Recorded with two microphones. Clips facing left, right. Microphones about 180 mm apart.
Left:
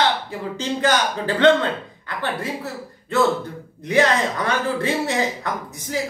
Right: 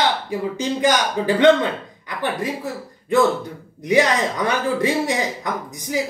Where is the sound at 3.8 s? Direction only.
15° right (ahead or behind).